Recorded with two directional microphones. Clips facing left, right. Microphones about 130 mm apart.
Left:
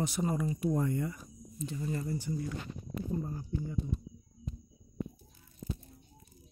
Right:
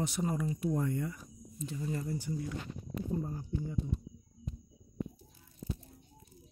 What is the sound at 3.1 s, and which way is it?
Speech, 20° right (ahead or behind).